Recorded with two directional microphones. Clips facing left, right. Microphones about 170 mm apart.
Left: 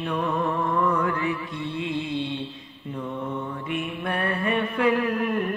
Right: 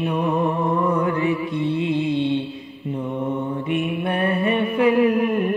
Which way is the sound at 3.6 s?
20° right (ahead or behind).